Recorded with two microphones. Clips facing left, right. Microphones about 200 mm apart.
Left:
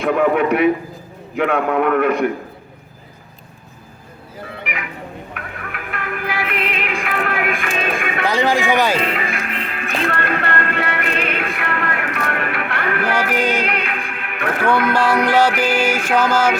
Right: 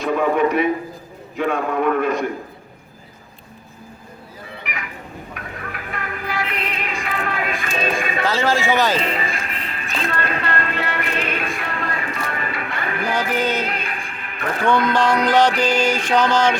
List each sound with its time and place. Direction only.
0.0 s speech: 60° left (ahead or behind)
5.3 s music: 65° left (ahead or behind)
8.2 s speech: 15° left (ahead or behind)
9.1 s music: 60° left (ahead or behind)
13.3 s music: 15° left (ahead or behind)
13.7 s music: 65° left (ahead or behind)
14.6 s music: 10° left (ahead or behind)